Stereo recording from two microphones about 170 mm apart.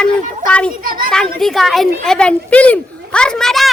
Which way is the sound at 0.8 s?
55° right (ahead or behind).